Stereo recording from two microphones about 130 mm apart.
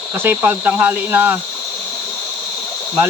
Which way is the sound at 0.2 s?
15° right (ahead or behind).